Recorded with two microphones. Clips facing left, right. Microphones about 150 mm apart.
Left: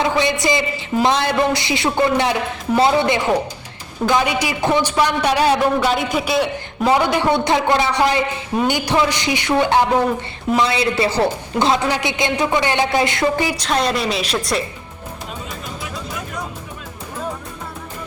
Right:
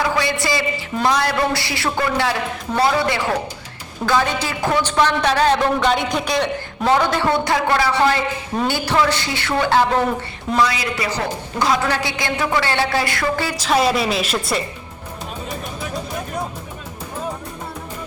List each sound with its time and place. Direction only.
0.0 s a sound: 20° left (ahead or behind)
1.0 s a man's voice: 20° left (ahead or behind)
13.6 s a woman's voice: 5° right (ahead or behind)